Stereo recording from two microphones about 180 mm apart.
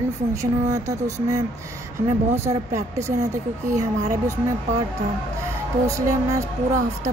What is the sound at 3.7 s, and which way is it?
Speech, 15° right (ahead or behind).